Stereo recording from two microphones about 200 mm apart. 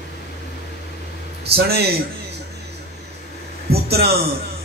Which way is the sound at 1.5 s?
50° right (ahead or behind).